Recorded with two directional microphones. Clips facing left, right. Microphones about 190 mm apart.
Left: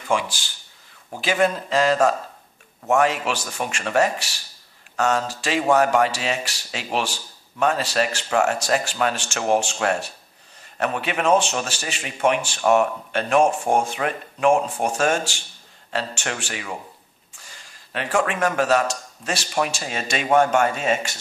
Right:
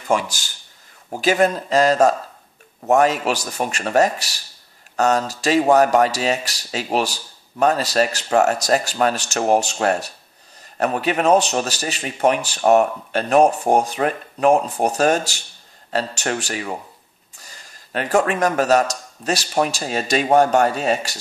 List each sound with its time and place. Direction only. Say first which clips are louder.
0.1 s speech: right 3 dB; 45° right (ahead or behind)